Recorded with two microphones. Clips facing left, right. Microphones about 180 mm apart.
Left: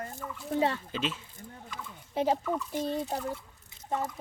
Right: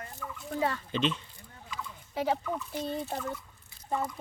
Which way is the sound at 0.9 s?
5° left (ahead or behind).